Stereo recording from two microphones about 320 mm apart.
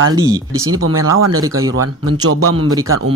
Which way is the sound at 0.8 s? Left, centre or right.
Right.